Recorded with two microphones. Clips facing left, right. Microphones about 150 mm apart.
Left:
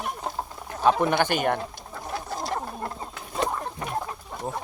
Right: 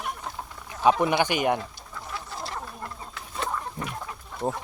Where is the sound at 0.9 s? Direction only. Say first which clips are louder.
Even; 10° right (ahead or behind).